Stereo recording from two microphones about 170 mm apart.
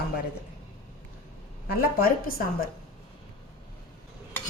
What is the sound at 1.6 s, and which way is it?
Speech, 60° left (ahead or behind).